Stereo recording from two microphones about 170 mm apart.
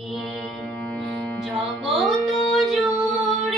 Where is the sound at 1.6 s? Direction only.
Centre (ahead or behind).